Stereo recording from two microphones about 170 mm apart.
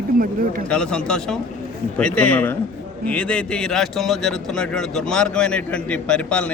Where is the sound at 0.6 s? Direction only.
5° left (ahead or behind).